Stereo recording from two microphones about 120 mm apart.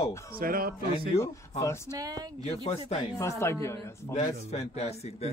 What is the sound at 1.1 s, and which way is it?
Speech, 55° left (ahead or behind).